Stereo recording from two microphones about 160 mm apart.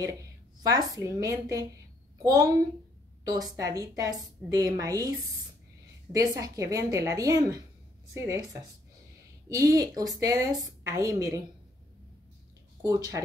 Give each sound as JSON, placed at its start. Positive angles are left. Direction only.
{"t": 0.0, "sound": "a woman's voice", "side_deg": -20}
{"t": 6.1, "sound": "a woman's voice", "side_deg": -25}
{"t": 9.5, "sound": "a woman's voice", "side_deg": -20}
{"t": 12.8, "sound": "a woman's voice", "side_deg": -25}